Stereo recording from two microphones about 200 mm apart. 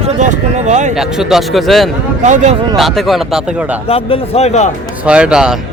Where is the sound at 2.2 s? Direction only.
35° right (ahead or behind).